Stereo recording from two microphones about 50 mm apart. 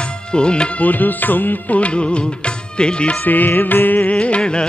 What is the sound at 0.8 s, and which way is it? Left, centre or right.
Music, left.